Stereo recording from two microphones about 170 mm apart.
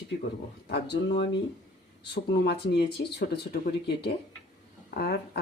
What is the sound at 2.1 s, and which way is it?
Speech, 70° left (ahead or behind).